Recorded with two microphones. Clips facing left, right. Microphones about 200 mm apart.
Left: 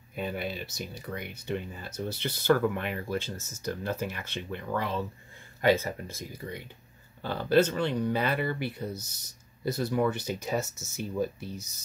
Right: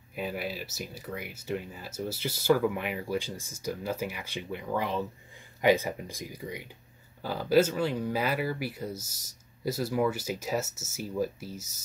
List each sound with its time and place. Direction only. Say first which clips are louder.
0.1 s speech: left 1 dB; 5° right (ahead or behind)